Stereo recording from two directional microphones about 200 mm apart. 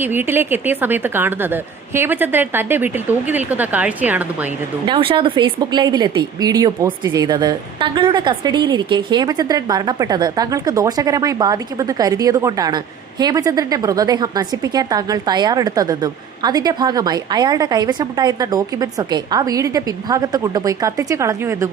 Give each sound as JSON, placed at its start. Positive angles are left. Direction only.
{"t": 0.0, "sound": "a woman's voice", "side_deg": -10}
{"t": 4.9, "sound": "a woman's voice", "side_deg": -25}